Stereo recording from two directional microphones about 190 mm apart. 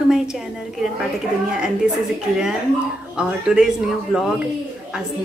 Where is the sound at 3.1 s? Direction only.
5° right (ahead or behind).